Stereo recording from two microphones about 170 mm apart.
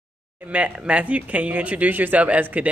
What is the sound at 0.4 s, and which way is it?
Speech, 10° right (ahead or behind).